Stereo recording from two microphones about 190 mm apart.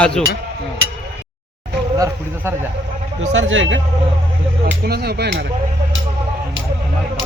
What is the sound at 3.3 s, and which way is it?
Speech, 85° right.